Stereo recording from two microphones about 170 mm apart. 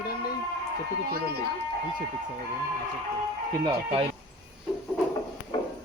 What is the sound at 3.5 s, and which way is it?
Speech, 30° right (ahead or behind).